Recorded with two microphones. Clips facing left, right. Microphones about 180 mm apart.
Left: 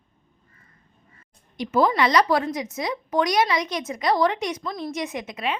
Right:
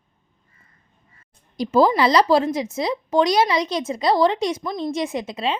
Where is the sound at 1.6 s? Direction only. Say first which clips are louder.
Right 4 dB; 30° right (ahead or behind).